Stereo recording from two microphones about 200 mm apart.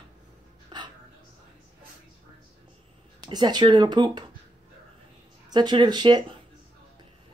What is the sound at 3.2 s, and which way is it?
Speech, 20° right (ahead or behind).